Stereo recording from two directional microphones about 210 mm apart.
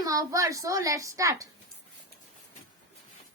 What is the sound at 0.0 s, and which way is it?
A woman's voice, 15° right (ahead or behind).